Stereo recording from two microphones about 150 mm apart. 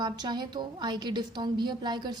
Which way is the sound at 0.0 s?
30° right (ahead or behind).